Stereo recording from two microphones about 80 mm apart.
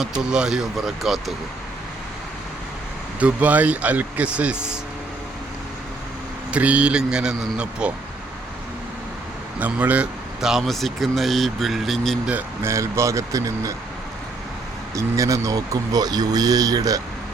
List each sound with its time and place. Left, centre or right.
0.0 s speech: centre
3.2 s a man's voice: centre
6.5 s a man's voice: centre
9.6 s speech: centre
10.4 s speech: centre
12.6 s speech: right
14.9 s speech: right